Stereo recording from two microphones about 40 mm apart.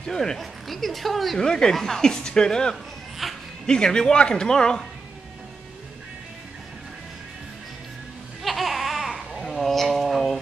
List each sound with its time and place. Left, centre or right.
0.0 s speech: centre
1.4 s speech: centre
2.7 s a sound: centre
3.6 s speech: centre
8.4 s babbling: centre
9.5 s a sound: centre